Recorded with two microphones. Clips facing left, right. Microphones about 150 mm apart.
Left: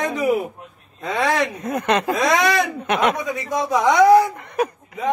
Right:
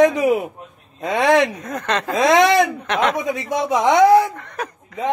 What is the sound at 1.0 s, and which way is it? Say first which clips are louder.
Speech: right 5 dB; 20° right (ahead or behind).